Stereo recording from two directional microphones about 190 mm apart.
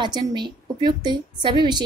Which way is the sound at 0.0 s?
25° right (ahead or behind).